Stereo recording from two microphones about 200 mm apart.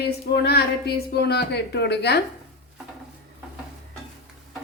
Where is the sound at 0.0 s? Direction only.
55° left (ahead or behind).